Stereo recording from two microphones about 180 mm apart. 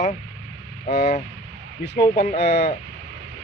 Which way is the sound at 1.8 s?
60° left (ahead or behind).